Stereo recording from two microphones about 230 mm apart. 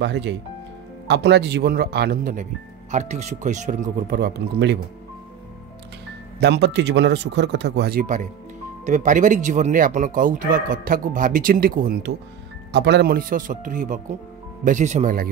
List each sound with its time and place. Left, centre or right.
0.0 s speech: right
6.4 s speech: right